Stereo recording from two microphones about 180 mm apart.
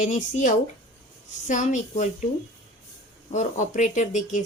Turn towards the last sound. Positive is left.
turn(degrees=45)  # may be behind; listen again after turning